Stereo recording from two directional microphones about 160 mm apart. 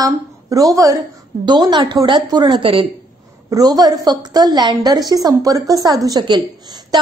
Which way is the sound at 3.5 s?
25° right (ahead or behind).